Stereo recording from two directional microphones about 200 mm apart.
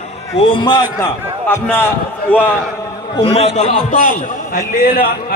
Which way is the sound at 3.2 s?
30° left (ahead or behind).